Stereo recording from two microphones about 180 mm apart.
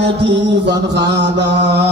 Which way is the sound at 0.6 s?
75° right (ahead or behind).